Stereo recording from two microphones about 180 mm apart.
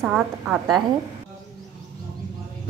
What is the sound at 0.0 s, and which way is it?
Speech, 5° right (ahead or behind).